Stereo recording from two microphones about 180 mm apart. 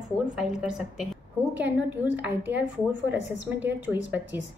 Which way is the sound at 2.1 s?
10° right (ahead or behind).